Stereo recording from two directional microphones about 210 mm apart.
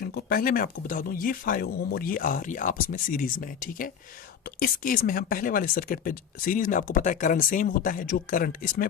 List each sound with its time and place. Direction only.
0.0 s speech: 45° left (ahead or behind)